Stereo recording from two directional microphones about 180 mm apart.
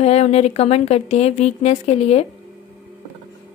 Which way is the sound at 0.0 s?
35° left (ahead or behind).